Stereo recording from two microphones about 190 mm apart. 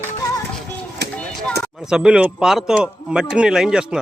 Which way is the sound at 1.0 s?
60° right (ahead or behind).